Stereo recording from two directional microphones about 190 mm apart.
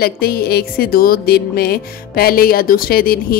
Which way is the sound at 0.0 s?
55° left (ahead or behind).